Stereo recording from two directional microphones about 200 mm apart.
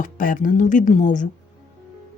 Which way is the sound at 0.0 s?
40° left (ahead or behind).